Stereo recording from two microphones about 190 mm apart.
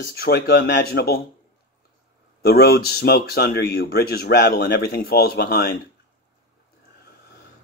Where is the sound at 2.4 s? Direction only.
55° left (ahead or behind).